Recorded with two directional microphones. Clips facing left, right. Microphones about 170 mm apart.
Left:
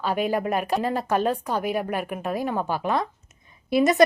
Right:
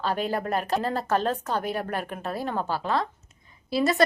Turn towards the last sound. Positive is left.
turn(degrees=20)  # may be behind; listen again after turning